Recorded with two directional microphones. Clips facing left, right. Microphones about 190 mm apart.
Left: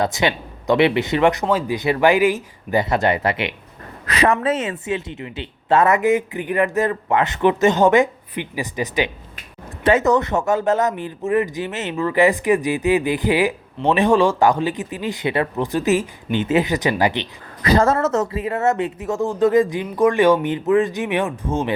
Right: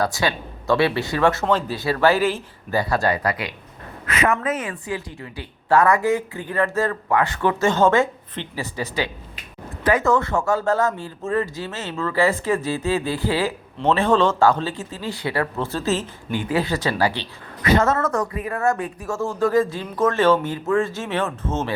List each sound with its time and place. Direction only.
0.0 s a woman's voice: 20° left (ahead or behind)
4.0 s a woman's voice: 35° left (ahead or behind); by 17.2 s 20° left (ahead or behind)
17.6 s a woman's voice: 35° left (ahead or behind); by 21.8 s 15° left (ahead or behind)